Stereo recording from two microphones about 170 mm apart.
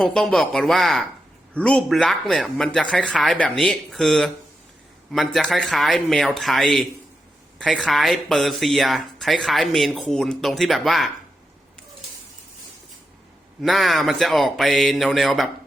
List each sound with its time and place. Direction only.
0.0 s speech: 5° left (ahead or behind)
13.6 s speech: centre (ahead or behind)